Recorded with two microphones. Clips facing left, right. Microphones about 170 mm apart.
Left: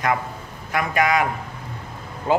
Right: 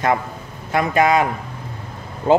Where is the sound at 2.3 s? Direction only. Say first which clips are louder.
Right 5 dB; 30° right (ahead or behind).